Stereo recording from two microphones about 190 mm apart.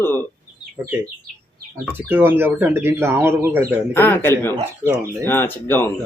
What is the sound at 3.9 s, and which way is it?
Speech, 10° left (ahead or behind).